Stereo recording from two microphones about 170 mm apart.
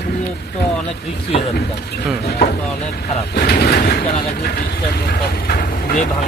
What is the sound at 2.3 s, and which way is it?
Speech, 65° left (ahead or behind).